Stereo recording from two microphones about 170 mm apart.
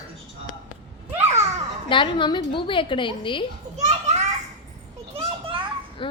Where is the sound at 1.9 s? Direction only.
30° left (ahead or behind).